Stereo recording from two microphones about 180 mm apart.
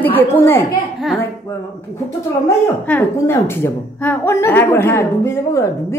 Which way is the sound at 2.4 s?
10° left (ahead or behind).